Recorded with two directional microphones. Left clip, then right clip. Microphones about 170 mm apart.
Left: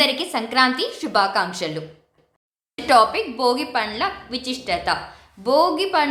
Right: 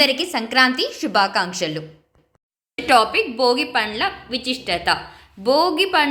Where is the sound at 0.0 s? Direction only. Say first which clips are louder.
Right 2 dB; 10° right (ahead or behind).